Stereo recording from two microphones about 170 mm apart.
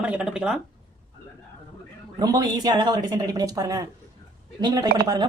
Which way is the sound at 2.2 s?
25° right (ahead or behind).